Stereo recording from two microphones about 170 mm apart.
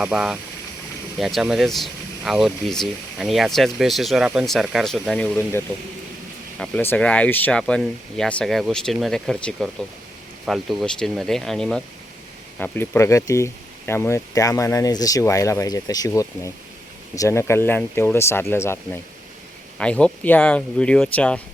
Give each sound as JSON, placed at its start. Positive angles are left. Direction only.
{"t": 0.0, "sound": "speech", "side_deg": -5}